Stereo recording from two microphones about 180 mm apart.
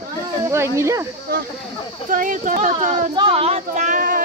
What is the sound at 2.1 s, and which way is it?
Speech, 45° right (ahead or behind).